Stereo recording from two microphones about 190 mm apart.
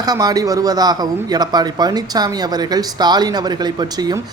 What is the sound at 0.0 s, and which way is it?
A man's voice, 20° right (ahead or behind).